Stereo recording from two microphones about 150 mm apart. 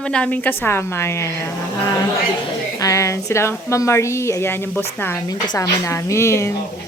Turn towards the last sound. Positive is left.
turn(degrees=20)  # may be behind; listen again after turning